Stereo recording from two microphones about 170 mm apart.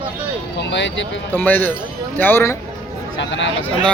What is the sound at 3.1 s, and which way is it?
Speech, 90° left.